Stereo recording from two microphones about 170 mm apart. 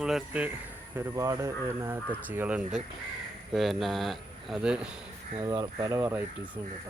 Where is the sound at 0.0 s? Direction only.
5° right (ahead or behind).